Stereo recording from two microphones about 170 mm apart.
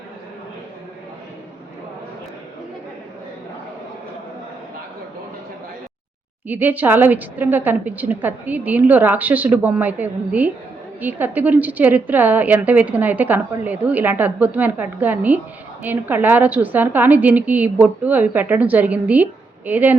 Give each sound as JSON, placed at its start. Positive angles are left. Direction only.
{"t": 6.5, "sound": "a woman's voice", "side_deg": -10}